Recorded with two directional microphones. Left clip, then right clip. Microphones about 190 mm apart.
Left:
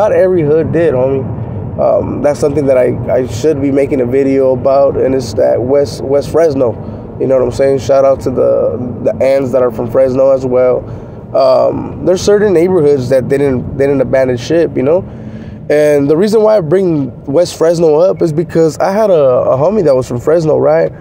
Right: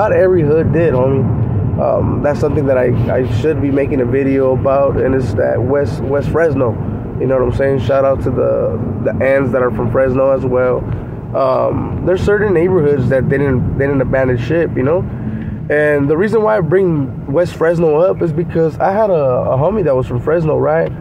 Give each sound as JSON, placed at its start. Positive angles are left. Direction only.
{"t": 0.0, "sound": "speech", "side_deg": 25}